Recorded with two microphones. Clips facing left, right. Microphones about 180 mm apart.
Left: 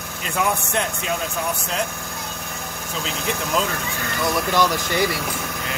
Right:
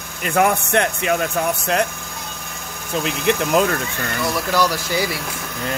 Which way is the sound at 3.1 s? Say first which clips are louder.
Right 6 dB; 60° right (ahead or behind).